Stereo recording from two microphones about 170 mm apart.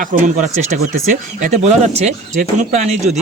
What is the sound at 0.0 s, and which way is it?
Speech, 50° right (ahead or behind).